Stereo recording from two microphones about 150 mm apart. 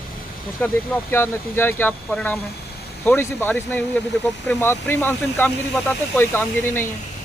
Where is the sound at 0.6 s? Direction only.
10° left (ahead or behind).